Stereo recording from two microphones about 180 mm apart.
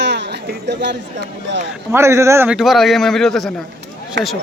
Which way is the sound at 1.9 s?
15° right (ahead or behind).